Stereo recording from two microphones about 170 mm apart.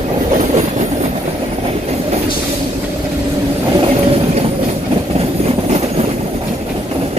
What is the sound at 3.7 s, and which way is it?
Vehicle, 35° right (ahead or behind).